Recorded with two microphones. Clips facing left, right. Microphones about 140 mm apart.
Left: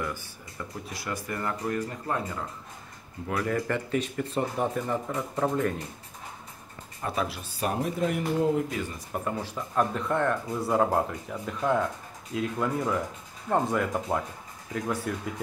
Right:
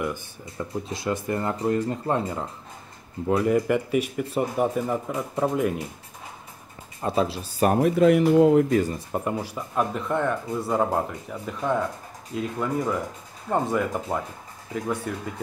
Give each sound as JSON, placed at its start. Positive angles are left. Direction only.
{"t": 0.0, "sound": "speech", "side_deg": -20}
{"t": 7.0, "sound": "speech", "side_deg": -25}
{"t": 7.6, "sound": "speech", "side_deg": -55}
{"t": 8.0, "sound": "speech", "side_deg": -90}
{"t": 8.6, "sound": "speech", "side_deg": -45}
{"t": 8.9, "sound": "speech", "side_deg": -25}
{"t": 9.4, "sound": "speech", "side_deg": -10}